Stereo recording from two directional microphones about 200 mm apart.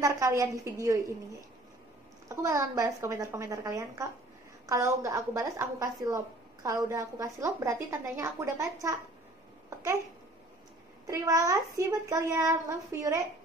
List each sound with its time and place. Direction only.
0.0 s a woman's voice: 15° right (ahead or behind)
2.2 s speech: 15° right (ahead or behind)
11.1 s speech: 15° right (ahead or behind)